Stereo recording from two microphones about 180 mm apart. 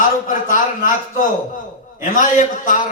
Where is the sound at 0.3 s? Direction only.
45° left (ahead or behind).